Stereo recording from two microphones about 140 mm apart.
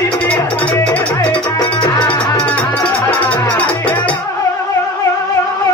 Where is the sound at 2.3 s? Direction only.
10° left (ahead or behind).